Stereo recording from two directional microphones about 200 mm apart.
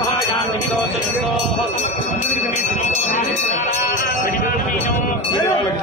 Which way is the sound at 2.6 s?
35° left (ahead or behind).